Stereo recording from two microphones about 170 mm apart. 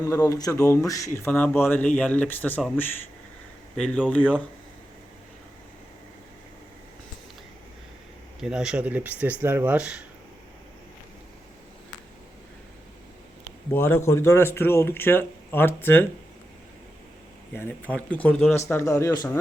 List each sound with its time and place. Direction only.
0.0 s speech: 20° left (ahead or behind)
8.4 s speech: 5° right (ahead or behind)
13.7 s speech: 15° left (ahead or behind)
17.5 s speech: 10° left (ahead or behind)